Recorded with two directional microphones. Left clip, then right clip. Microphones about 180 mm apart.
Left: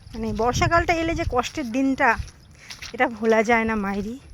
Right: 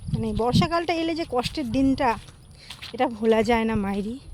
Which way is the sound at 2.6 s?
50° left (ahead or behind).